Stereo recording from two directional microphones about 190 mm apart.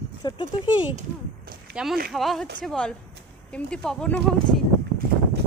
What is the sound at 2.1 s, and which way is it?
Speech, centre (ahead or behind).